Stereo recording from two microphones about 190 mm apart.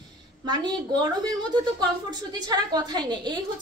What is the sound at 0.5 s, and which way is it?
A woman's voice, 20° right (ahead or behind).